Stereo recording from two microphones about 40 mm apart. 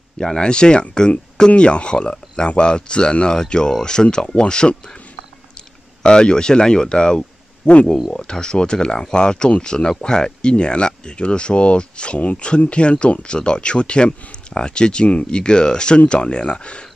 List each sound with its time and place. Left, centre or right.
0.2 s speech: left
6.0 s speech: left